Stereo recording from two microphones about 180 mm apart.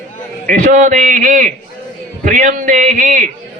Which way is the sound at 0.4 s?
45° right (ahead or behind).